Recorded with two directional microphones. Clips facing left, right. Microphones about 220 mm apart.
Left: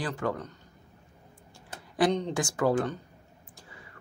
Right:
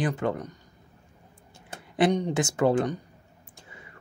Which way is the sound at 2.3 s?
20° right (ahead or behind).